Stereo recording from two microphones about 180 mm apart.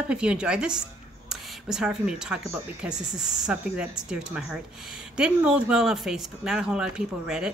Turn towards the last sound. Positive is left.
turn(degrees=-5)  # may be behind; listen again after turning